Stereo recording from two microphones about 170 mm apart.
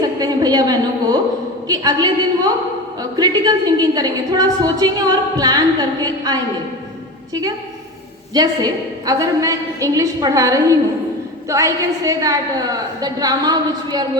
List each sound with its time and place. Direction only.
0.0 s a sound: 25° right (ahead or behind)
1.6 s a woman's voice: 20° right (ahead or behind)
8.3 s a woman's voice: 25° right (ahead or behind)